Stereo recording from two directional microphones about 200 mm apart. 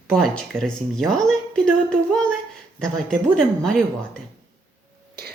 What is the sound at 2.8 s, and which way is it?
Speech, 5° left (ahead or behind).